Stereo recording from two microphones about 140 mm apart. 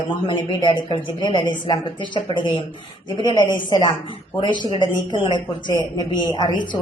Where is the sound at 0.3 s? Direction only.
35° left (ahead or behind).